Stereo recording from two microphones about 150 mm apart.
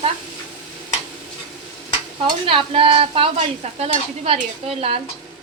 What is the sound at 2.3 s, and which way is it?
A woman's voice, 35° right (ahead or behind).